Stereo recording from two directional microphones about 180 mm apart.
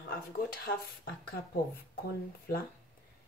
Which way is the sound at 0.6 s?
55° left (ahead or behind).